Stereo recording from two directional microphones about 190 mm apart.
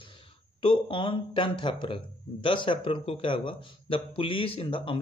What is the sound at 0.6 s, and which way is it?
Speech, 25° left (ahead or behind).